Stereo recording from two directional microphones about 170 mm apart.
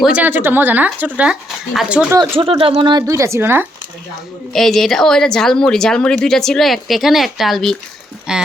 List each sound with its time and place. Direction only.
0.0 s speech: 10° right (ahead or behind)
2.3 s speech: 30° right (ahead or behind)
3.1 s speech: 15° right (ahead or behind)
4.5 s speech: centre (ahead or behind)